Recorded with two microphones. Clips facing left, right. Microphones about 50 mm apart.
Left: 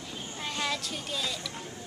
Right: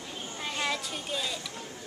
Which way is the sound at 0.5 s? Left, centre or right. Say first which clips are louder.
Right 1 dB; centre.